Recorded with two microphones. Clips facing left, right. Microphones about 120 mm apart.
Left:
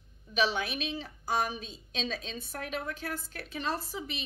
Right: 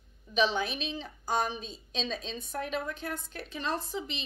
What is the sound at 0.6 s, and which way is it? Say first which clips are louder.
Speech: right 1 dB; 35° right (ahead or behind).